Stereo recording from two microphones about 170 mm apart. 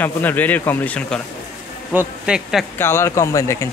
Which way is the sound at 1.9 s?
5° right (ahead or behind).